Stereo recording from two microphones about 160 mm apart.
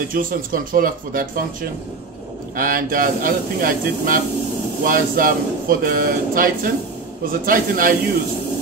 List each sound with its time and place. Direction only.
0.1 s speech: 60° right (ahead or behind)
2.5 s speech: 60° right (ahead or behind)